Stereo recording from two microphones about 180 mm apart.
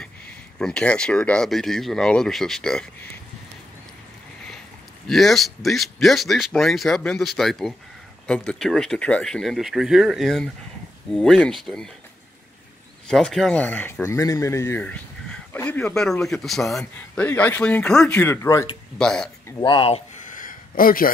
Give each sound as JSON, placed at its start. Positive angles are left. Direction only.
{"t": 0.6, "sound": "speech", "side_deg": 5}
{"t": 5.0, "sound": "speech", "side_deg": 0}
{"t": 13.1, "sound": "speech", "side_deg": 0}
{"t": 18.9, "sound": "speech", "side_deg": 5}
{"t": 19.6, "sound": "speech", "side_deg": 30}
{"t": 20.3, "sound": "a sound", "side_deg": 50}